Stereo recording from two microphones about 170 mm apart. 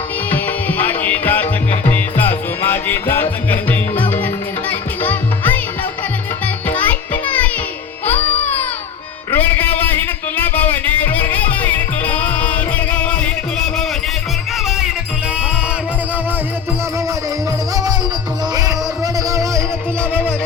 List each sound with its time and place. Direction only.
0.3 s music: 10° left (ahead or behind)
2.6 s music: 10° left (ahead or behind)
6.7 s music: 10° left (ahead or behind)
9.3 s a sound: 10° left (ahead or behind)
19.3 s music: 20° right (ahead or behind)